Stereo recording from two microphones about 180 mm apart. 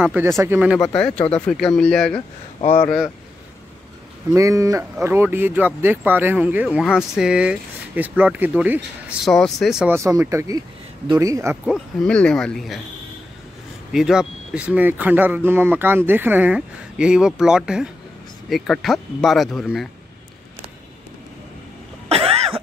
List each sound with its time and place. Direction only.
0.0 s speech: 10° right (ahead or behind)
0.9 s speech: 5° left (ahead or behind)
2.6 s speech: 35° left (ahead or behind)
4.3 s speech: 15° right (ahead or behind)
9.9 s speech: 15° right (ahead or behind)
11.6 s speech: centre (ahead or behind)
13.9 s speech: 5° right (ahead or behind)
22.1 s cough: 35° right (ahead or behind)